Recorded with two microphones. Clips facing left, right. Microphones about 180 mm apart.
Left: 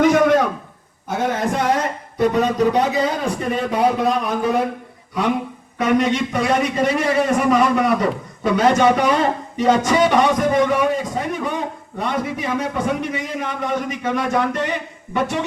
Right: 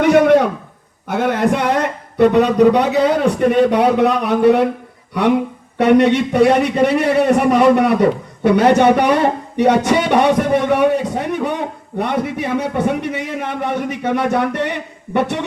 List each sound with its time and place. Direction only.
0.0 s a sound: 65° right (ahead or behind)
1.0 s a man's voice: 65° right (ahead or behind)
5.7 s a man's voice: 65° right (ahead or behind)